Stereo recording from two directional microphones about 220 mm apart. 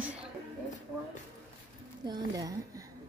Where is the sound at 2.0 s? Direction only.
20° right (ahead or behind).